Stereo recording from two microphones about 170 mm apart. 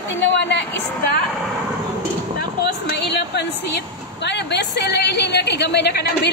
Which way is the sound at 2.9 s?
90° left.